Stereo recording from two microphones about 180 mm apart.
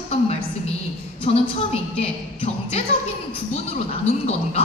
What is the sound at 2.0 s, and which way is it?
Music, 35° left (ahead or behind).